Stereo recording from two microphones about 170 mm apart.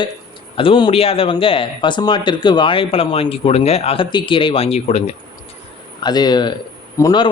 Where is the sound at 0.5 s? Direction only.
30° left (ahead or behind).